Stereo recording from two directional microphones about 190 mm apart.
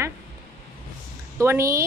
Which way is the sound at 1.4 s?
15° right (ahead or behind).